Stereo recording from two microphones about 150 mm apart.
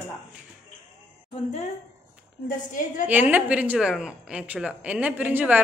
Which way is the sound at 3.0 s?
10° right (ahead or behind).